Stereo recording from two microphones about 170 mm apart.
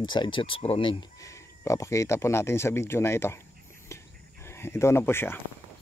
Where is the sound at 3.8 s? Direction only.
15° left (ahead or behind).